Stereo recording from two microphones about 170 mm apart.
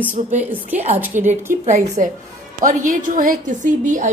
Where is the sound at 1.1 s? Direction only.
45° right (ahead or behind).